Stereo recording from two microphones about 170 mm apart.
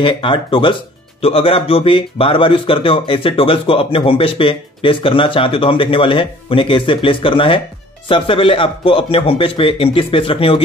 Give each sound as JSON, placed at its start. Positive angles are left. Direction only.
{"t": 0.0, "sound": "speech", "side_deg": 30}